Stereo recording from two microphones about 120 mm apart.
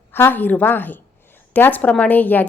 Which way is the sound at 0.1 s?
15° left (ahead or behind).